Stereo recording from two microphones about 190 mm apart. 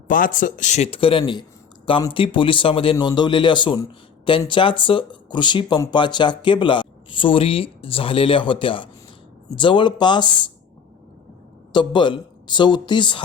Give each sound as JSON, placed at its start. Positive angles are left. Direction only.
{"t": 0.1, "sound": "a man's voice", "side_deg": 45}
{"t": 11.7, "sound": "speech", "side_deg": 25}